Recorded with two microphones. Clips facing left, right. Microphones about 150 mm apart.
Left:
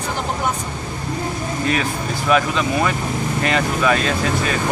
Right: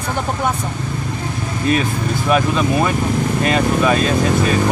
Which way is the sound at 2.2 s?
15° right (ahead or behind).